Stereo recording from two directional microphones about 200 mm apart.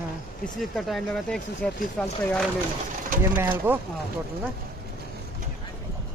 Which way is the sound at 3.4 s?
10° right (ahead or behind).